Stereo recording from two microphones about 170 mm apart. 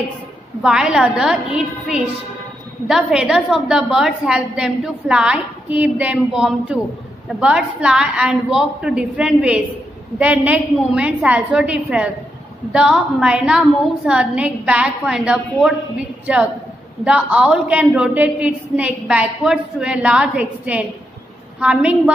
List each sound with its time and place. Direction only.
0.6 s a woman's voice: centre (ahead or behind)